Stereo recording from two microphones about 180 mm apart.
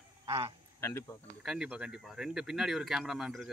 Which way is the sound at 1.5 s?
5° right (ahead or behind).